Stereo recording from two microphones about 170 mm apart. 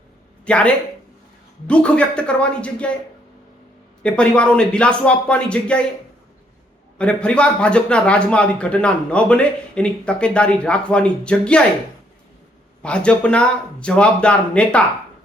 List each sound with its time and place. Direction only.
0.4 s speech: 5° left (ahead or behind)
4.0 s speech: 5° left (ahead or behind)
7.0 s speech: 5° left (ahead or behind)
12.8 s speech: 5° left (ahead or behind)